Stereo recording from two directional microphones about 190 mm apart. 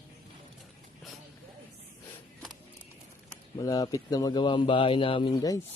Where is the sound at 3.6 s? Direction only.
20° left (ahead or behind).